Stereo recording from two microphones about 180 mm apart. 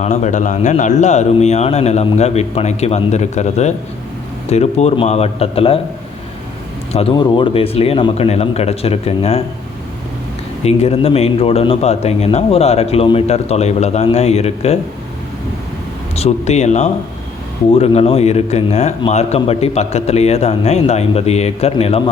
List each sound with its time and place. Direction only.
0.0 s speech: 40° left (ahead or behind)
7.1 s speech: 25° left (ahead or behind)
10.6 s speech: 35° left (ahead or behind)
16.1 s speech: 35° left (ahead or behind)